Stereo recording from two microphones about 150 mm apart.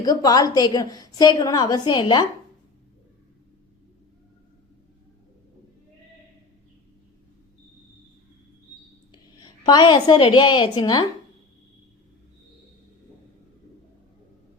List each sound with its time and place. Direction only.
0.0 s a woman's voice: 25° left (ahead or behind)
9.1 s a woman's voice: 30° left (ahead or behind)